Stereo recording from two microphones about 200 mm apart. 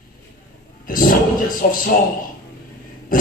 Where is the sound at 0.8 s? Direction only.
45° left (ahead or behind).